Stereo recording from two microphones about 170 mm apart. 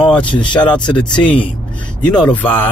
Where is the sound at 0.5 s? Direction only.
5° left (ahead or behind).